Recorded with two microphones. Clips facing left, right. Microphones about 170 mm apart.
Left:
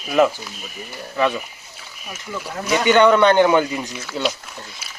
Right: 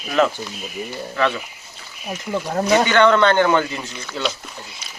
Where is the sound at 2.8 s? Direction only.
15° left (ahead or behind).